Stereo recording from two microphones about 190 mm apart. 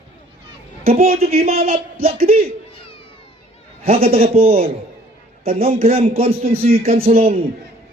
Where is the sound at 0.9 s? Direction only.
30° right (ahead or behind).